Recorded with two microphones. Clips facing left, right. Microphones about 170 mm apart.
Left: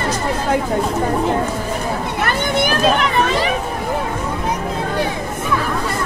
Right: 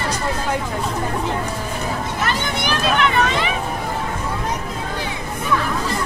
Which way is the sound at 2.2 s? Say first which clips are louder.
Left 6 dB; 50° left (ahead or behind).